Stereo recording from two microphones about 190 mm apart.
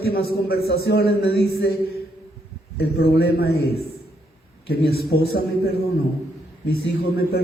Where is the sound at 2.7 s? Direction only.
55° left (ahead or behind).